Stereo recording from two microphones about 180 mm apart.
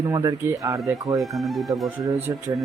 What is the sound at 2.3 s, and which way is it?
Speech, 20° right (ahead or behind).